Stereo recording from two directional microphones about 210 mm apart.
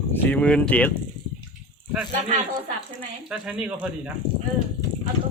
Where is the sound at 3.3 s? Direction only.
5° right (ahead or behind).